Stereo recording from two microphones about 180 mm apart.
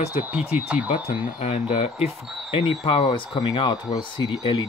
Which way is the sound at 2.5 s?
30° left (ahead or behind).